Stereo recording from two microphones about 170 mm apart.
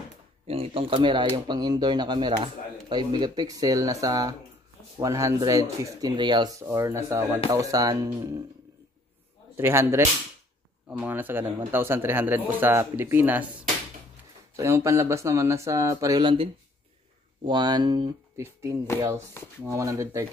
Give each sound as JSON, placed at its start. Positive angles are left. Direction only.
{"t": 0.5, "sound": "speech", "side_deg": -35}
{"t": 9.6, "sound": "a man's voice", "side_deg": -15}
{"t": 14.6, "sound": "a man's voice", "side_deg": -15}
{"t": 17.5, "sound": "a man's voice", "side_deg": -25}